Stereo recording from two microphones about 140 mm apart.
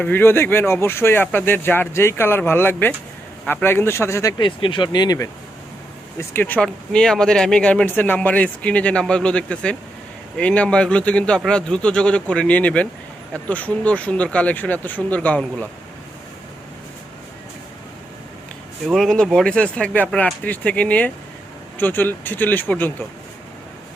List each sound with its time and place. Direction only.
0.0 s speech: 15° left (ahead or behind)
6.1 s speech: 15° left (ahead or behind)
18.9 s speech: centre (ahead or behind)